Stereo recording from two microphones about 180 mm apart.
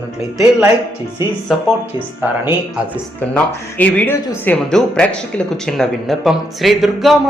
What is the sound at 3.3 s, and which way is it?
Speech, 10° left (ahead or behind).